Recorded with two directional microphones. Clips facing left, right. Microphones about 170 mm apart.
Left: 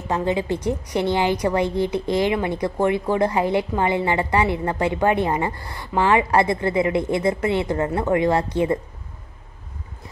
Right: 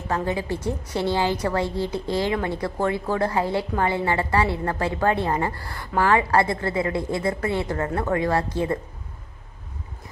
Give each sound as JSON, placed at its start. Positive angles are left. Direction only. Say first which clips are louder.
{"t": 0.1, "sound": "a woman's voice", "louder": "left 3 dB", "side_deg": 20}